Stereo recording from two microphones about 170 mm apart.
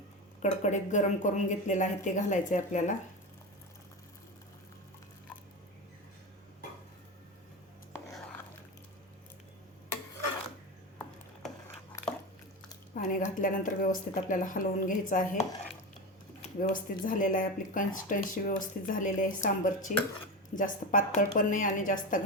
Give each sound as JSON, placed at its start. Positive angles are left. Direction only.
{"t": 0.4, "sound": "speech", "side_deg": 45}
{"t": 12.1, "sound": "dog", "side_deg": 5}
{"t": 12.9, "sound": "speech", "side_deg": 55}